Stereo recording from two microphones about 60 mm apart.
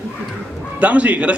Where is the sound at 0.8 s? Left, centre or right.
Right.